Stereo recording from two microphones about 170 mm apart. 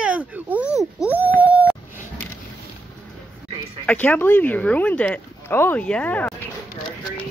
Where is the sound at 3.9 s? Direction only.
10° left (ahead or behind).